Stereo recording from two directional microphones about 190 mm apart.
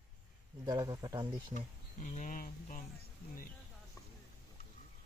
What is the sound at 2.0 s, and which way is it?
Speech, 40° left (ahead or behind).